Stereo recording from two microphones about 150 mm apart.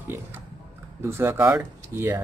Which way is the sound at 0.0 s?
15° right (ahead or behind).